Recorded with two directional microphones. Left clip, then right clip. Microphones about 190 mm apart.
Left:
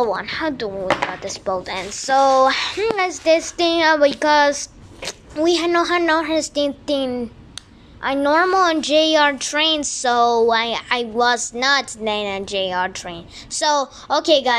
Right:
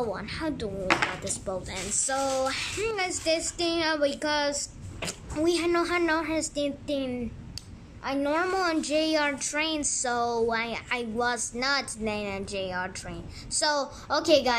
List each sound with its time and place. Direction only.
0.0 s a woman's voice: 10° right (ahead or behind)
2.0 s child singing: 10° right (ahead or behind)